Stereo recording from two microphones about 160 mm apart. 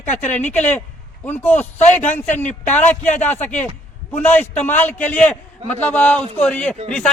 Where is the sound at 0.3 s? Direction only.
10° left (ahead or behind).